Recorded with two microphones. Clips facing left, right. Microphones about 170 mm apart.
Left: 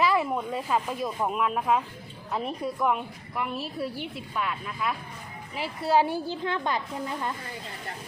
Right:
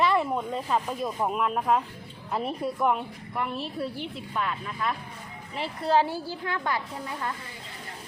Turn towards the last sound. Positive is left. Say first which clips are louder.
# left 2 dB
turn(degrees=20)  # may be behind; listen again after turning